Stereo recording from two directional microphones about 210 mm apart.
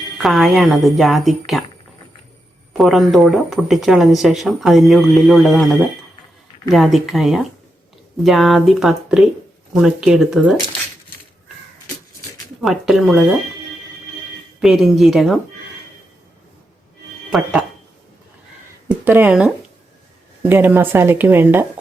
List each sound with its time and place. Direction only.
0.2 s speech: centre (ahead or behind)
2.7 s speech: centre (ahead or behind)
6.7 s speech: centre (ahead or behind)
12.6 s speech: centre (ahead or behind)
14.6 s speech: centre (ahead or behind)
17.3 s speech: centre (ahead or behind)
18.9 s speech: 10° right (ahead or behind)